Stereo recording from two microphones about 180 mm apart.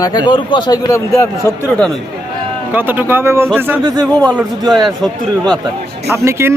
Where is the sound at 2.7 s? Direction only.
10° right (ahead or behind).